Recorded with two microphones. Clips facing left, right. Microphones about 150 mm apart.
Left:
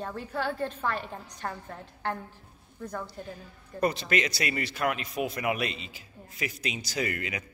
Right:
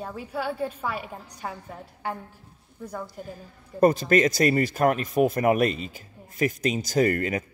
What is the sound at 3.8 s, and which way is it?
Speech, 45° right (ahead or behind).